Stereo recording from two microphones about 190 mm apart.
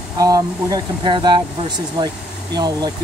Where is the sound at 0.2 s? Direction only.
20° right (ahead or behind).